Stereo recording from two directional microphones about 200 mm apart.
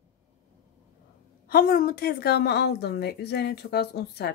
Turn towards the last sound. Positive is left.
turn(degrees=55)  # may be behind; listen again after turning